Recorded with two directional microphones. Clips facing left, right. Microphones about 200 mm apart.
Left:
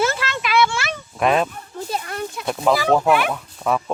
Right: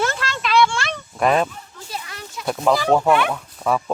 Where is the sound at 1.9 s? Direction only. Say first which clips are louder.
Left 7 dB; 50° left (ahead or behind).